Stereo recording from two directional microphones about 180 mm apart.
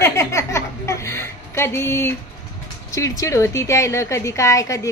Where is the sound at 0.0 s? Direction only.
15° left (ahead or behind).